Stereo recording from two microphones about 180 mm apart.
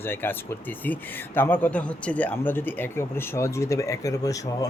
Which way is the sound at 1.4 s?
10° left (ahead or behind).